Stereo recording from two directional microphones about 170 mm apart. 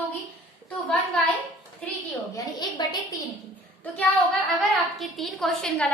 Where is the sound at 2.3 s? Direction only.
25° left (ahead or behind).